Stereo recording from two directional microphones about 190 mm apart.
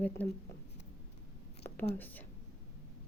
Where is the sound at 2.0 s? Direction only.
10° left (ahead or behind).